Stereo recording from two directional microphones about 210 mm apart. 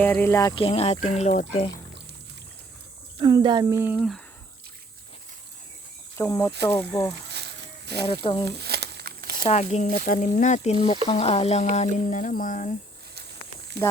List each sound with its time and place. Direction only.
0.0 s speech: 10° left (ahead or behind); by 1.6 s 35° left (ahead or behind)
3.2 s speech: 20° right (ahead or behind); by 4.2 s centre (ahead or behind)
6.1 s speech: 10° left (ahead or behind)
7.3 s a sound: 50° right (ahead or behind)
8.0 s speech: 20° left (ahead or behind)
8.4 s crumpling: 50° right (ahead or behind)
9.4 s speech: 35° left (ahead or behind)